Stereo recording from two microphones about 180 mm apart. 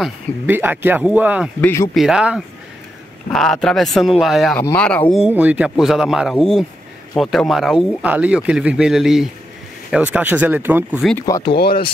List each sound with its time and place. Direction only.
0.5 s speech: 10° right (ahead or behind)
1.6 s speech: 15° left (ahead or behind)
2.0 s speech: 5° right (ahead or behind)
5.1 s speech: 5° right (ahead or behind)
11.5 s speech: 60° left (ahead or behind)